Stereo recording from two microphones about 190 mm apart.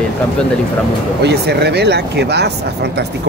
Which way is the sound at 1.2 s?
60° right (ahead or behind).